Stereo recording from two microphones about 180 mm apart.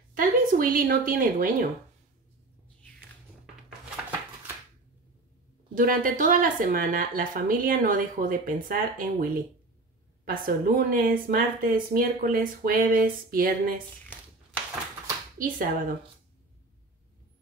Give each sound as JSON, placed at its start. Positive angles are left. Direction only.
{"t": 0.1, "sound": "speech", "side_deg": -50}
{"t": 5.8, "sound": "speech", "side_deg": -50}
{"t": 15.3, "sound": "speech", "side_deg": -50}